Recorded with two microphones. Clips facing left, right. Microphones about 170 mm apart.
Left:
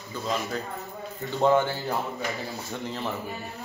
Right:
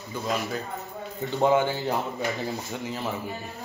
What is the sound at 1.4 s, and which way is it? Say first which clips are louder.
Speech: even; 15° right (ahead or behind).